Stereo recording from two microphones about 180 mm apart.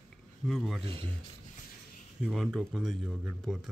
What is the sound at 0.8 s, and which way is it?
Speech, 30° right (ahead or behind).